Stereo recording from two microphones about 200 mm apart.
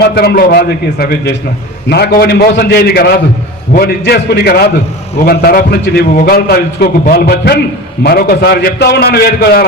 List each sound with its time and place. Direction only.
0.0 s a man's voice: 50° left (ahead or behind)